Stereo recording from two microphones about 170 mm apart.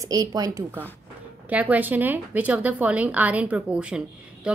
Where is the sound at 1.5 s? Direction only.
10° right (ahead or behind).